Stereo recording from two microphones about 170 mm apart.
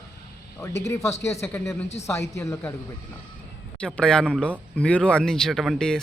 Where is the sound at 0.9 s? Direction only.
15° left (ahead or behind).